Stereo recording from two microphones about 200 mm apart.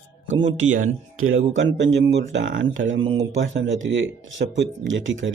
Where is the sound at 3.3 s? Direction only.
65° right (ahead or behind).